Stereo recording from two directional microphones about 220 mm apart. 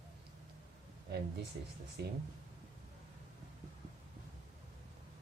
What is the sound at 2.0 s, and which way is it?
Speech, 45° right (ahead or behind).